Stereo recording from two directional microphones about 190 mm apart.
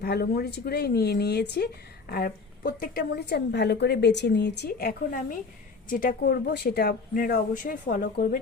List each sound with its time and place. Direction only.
0.0 s speech: 55° left (ahead or behind)